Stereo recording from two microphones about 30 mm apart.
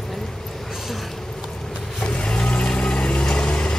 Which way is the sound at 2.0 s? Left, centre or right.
Left.